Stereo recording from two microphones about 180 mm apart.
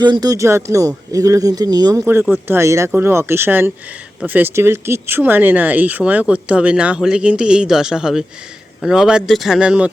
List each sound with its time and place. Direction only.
0.0 s speech: 25° right (ahead or behind); by 9.9 s 5° right (ahead or behind)